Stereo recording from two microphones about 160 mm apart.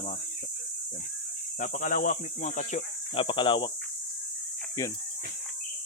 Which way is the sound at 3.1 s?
35° left (ahead or behind).